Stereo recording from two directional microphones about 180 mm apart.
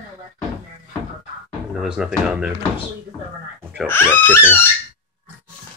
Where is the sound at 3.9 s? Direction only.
10° left (ahead or behind).